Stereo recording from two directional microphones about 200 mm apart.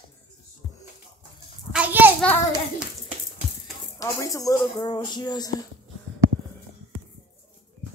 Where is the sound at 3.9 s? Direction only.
15° left (ahead or behind).